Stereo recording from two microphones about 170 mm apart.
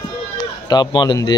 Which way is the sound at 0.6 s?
25° left (ahead or behind).